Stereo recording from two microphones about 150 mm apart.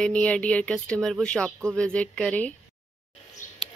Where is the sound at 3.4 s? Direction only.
60° left (ahead or behind).